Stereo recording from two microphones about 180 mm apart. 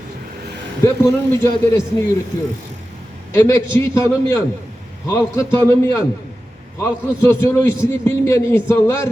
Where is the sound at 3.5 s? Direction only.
15° left (ahead or behind).